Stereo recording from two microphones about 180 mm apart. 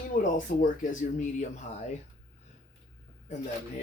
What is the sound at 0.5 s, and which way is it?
Speech, 55° left (ahead or behind).